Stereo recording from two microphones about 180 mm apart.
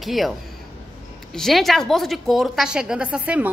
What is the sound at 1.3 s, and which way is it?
A woman's voice, centre (ahead or behind).